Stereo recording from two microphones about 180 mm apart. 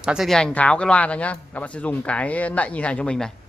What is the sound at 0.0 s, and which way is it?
A man's voice, centre (ahead or behind).